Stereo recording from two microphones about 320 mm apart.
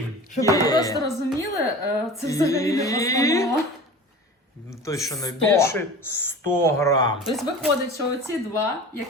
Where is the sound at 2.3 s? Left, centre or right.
Centre.